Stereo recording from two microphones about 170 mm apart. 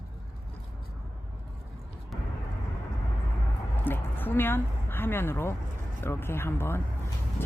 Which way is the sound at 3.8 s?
10° left (ahead or behind).